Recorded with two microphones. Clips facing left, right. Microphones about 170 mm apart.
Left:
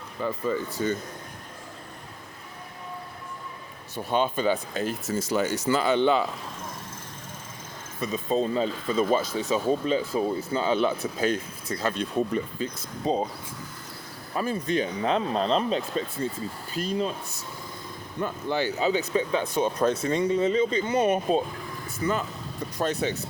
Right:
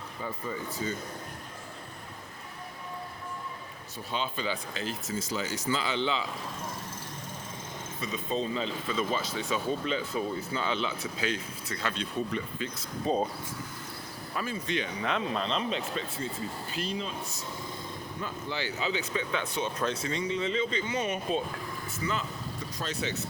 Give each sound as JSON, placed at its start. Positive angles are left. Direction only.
{"t": 0.2, "sound": "speech", "side_deg": 80}
{"t": 4.1, "sound": "speech", "side_deg": 50}
{"t": 5.3, "sound": "speech", "side_deg": 65}
{"t": 5.7, "sound": "speech", "side_deg": 55}
{"t": 8.0, "sound": "speech", "side_deg": 45}
{"t": 11.7, "sound": "speech", "side_deg": 40}
{"t": 14.3, "sound": "speech", "side_deg": 40}
{"t": 18.2, "sound": "speech", "side_deg": 50}
{"t": 22.8, "sound": "speech", "side_deg": 55}